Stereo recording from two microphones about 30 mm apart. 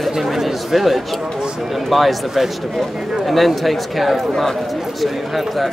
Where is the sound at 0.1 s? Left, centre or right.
Centre.